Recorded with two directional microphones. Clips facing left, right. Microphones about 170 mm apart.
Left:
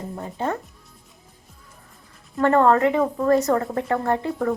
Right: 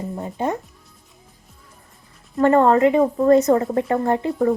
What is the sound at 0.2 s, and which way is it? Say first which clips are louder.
Speech: right 2 dB; 15° right (ahead or behind).